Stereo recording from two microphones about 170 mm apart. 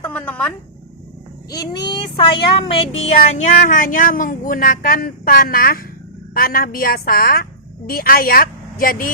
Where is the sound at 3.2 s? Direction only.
45° left (ahead or behind).